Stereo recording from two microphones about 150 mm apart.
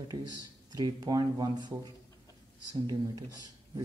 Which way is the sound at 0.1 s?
20° right (ahead or behind).